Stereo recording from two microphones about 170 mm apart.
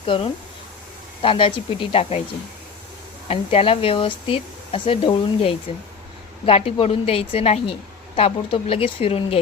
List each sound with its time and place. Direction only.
0.0 s a woman's voice: 30° left (ahead or behind)
3.2 s a woman's voice: 35° left (ahead or behind)